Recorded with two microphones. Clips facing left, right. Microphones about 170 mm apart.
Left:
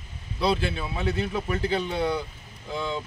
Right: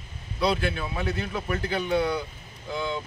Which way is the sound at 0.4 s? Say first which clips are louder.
Even; 30° left (ahead or behind).